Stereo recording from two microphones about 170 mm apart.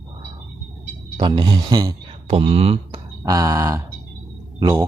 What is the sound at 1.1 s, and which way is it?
Speech, 25° right (ahead or behind).